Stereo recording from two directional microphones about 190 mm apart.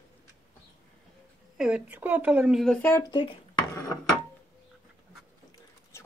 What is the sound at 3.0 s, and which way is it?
Speech, 25° left (ahead or behind).